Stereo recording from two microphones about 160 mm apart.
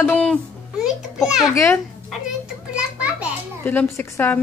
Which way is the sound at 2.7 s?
5° right (ahead or behind).